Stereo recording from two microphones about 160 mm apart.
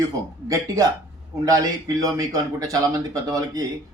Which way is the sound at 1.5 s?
20° right (ahead or behind).